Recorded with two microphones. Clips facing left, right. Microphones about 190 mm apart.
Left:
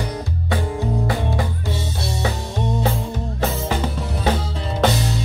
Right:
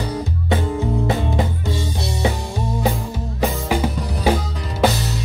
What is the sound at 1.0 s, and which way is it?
Music, 20° right (ahead or behind).